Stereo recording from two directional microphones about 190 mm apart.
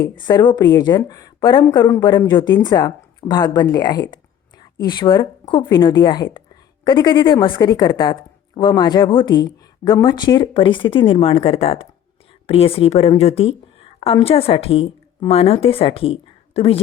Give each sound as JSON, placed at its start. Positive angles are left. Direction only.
{"t": 0.0, "sound": "a woman's voice", "side_deg": 20}